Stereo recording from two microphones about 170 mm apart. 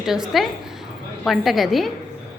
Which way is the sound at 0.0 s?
5° right (ahead or behind).